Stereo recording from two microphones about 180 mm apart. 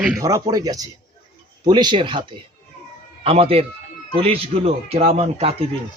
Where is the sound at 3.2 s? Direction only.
30° right (ahead or behind).